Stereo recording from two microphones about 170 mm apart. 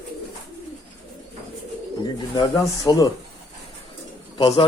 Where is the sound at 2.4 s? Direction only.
20° left (ahead or behind).